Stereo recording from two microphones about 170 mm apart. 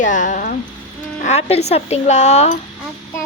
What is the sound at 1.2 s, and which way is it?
A woman's voice, 40° left (ahead or behind).